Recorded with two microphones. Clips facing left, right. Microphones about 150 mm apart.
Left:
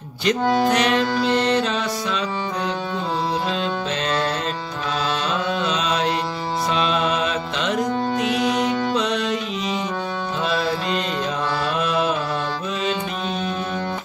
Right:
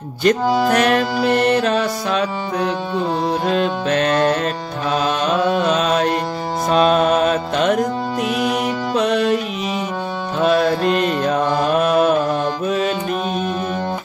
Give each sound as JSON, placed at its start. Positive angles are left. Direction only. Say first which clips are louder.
{"t": 0.7, "sound": "music", "louder": "right 3 dB", "side_deg": -50}
{"t": 3.9, "sound": "music", "louder": "right 10 dB", "side_deg": -55}
{"t": 4.9, "sound": "mantra", "louder": "right 6 dB", "side_deg": -55}
{"t": 6.7, "sound": "music", "louder": "right 8 dB", "side_deg": -45}
{"t": 8.4, "sound": "music", "louder": "right 2 dB", "side_deg": -5}
{"t": 8.9, "sound": "music", "louder": "right 5 dB", "side_deg": -55}
{"t": 10.4, "sound": "mantra", "louder": "right 9 dB", "side_deg": -50}